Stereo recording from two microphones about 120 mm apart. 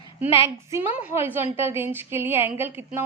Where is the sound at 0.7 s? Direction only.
15° right (ahead or behind).